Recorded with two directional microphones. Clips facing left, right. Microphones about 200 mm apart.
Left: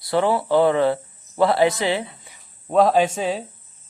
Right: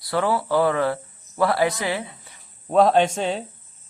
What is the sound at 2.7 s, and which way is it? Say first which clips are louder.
Speech: even; centre (ahead or behind).